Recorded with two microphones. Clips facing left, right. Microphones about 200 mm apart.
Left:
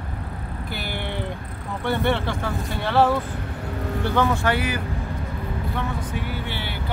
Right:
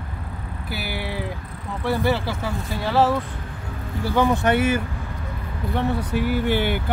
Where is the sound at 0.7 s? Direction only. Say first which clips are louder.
Right 2 dB; 5° right (ahead or behind).